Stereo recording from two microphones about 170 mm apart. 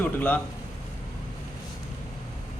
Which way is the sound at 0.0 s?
10° left (ahead or behind).